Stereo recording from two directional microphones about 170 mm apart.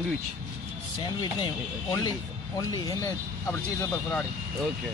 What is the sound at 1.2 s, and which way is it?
Speech, 25° left (ahead or behind).